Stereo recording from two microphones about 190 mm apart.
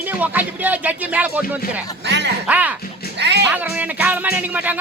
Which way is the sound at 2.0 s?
65° right (ahead or behind).